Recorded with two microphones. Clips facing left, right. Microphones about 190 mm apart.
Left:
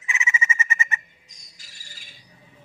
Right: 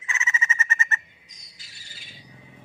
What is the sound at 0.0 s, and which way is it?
Bird, 15° left (ahead or behind).